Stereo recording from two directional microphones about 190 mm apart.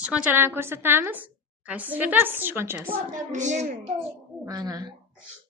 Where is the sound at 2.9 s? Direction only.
40° right (ahead or behind).